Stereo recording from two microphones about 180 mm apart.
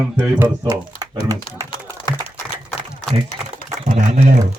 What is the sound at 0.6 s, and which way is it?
Speech, 20° right (ahead or behind).